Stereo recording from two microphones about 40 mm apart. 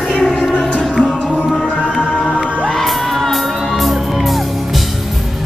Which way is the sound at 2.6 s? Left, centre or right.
Centre.